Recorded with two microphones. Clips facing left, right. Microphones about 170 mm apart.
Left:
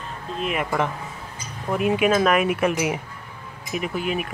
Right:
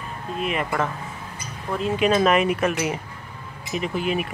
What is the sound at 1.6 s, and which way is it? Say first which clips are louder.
Speech: left 2 dB; 15° left (ahead or behind).